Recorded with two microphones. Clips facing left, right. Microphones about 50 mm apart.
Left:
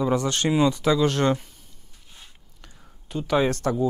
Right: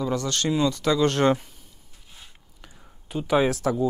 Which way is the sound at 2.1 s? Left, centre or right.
Centre.